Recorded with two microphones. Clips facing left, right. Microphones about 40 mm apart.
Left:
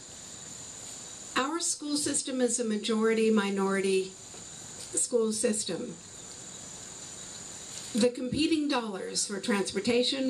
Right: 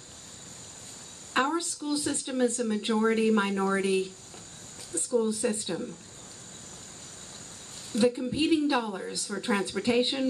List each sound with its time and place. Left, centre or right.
1.3 s speech: centre
8.0 s speech: centre